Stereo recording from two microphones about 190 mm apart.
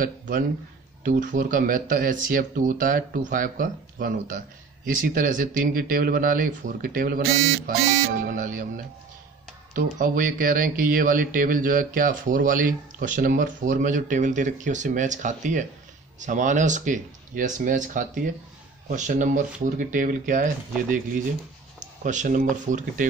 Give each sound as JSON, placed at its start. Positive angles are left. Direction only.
{"t": 0.0, "sound": "a man's voice", "side_deg": -45}
{"t": 9.8, "sound": "speech", "side_deg": -45}